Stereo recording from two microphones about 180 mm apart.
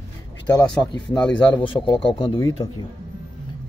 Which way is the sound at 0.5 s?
5° left (ahead or behind).